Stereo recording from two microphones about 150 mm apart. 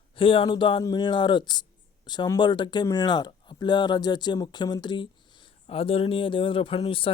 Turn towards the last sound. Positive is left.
turn(degrees=35)  # may be behind; listen again after turning